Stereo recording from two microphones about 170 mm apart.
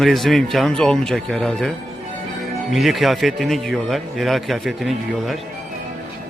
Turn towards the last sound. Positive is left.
turn(degrees=0)  # may be behind; listen again after turning